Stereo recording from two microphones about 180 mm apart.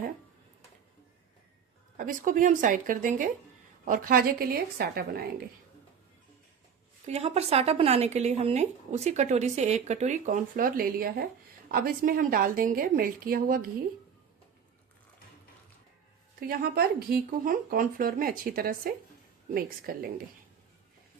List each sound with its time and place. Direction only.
2.0 s a woman's voice: 45° right (ahead or behind)
7.0 s a woman's voice: 35° right (ahead or behind); by 13.7 s 55° right (ahead or behind)
16.5 s a woman's voice: 60° right (ahead or behind)